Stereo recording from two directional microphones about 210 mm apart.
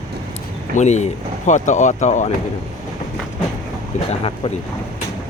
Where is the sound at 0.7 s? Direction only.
35° left (ahead or behind).